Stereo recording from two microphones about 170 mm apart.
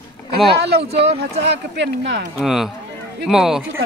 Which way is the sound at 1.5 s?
90° right.